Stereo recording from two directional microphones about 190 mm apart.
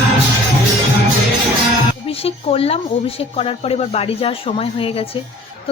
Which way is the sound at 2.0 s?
30° left (ahead or behind).